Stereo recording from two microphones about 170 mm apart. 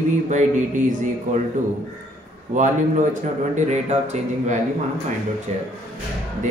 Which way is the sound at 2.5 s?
45° right (ahead or behind).